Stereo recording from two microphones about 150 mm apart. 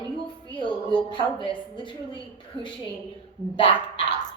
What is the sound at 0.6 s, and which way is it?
A woman's voice, 30° left (ahead or behind).